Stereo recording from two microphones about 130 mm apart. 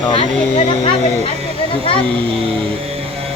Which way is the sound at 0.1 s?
40° left (ahead or behind).